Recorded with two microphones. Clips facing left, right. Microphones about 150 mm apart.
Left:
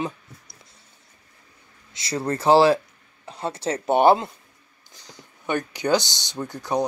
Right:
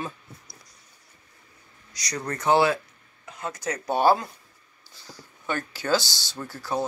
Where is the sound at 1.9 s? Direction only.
25° left (ahead or behind).